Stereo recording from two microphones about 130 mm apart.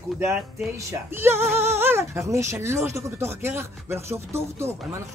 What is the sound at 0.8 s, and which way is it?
Speech, 20° right (ahead or behind).